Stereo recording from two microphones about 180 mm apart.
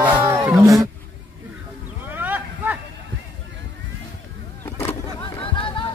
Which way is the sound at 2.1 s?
10° right (ahead or behind).